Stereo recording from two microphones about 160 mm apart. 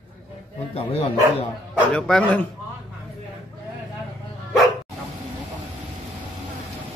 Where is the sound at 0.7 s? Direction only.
40° left (ahead or behind).